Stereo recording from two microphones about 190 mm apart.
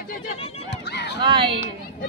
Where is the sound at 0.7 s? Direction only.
60° left (ahead or behind).